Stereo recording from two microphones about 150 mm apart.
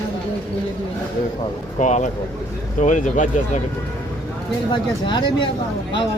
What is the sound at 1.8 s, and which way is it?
Speech, 55° left (ahead or behind).